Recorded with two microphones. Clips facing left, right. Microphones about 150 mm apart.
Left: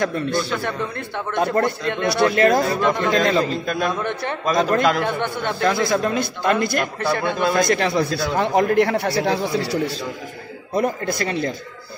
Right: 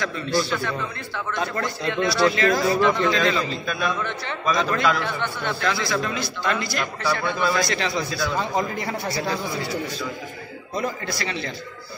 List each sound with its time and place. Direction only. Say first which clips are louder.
0.0 s a man's voice: left 3 dB; 55° left (ahead or behind); by 9.8 s 75° left (ahead or behind)
10.7 s a man's voice: left 6 dB; 55° left (ahead or behind)